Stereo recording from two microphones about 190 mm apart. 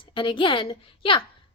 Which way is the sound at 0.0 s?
25° left (ahead or behind).